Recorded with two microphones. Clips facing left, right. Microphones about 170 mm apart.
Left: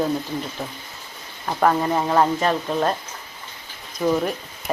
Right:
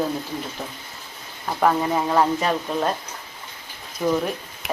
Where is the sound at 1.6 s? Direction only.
Centre (ahead or behind).